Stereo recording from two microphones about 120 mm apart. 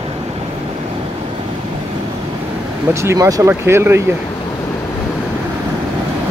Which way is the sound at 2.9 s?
25° right (ahead or behind).